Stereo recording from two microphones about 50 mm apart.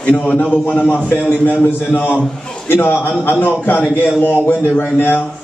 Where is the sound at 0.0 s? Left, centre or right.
Left.